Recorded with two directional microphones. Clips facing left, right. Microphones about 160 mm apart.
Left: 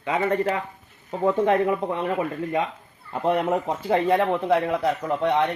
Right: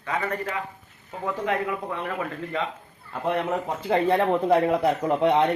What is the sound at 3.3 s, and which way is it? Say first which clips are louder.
Speech: left 3 dB; 10° left (ahead or behind).